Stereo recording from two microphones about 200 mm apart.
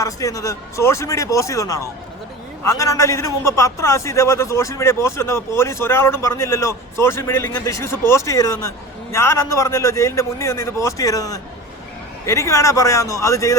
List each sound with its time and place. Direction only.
0.0 s a man's voice: 15° left (ahead or behind)